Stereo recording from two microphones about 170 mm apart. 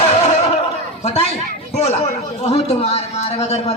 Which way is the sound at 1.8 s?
40° left (ahead or behind).